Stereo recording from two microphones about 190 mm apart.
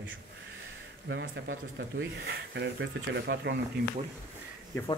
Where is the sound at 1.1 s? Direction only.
80° right; by 3.5 s 65° right (ahead or behind).